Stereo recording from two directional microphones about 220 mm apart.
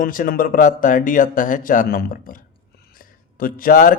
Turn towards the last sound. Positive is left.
turn(degrees=40)  # may be behind; listen again after turning